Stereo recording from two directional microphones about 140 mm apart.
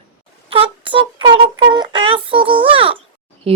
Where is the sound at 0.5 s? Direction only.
40° right (ahead or behind).